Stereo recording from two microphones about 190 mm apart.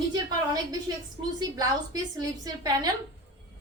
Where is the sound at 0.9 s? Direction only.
20° right (ahead or behind).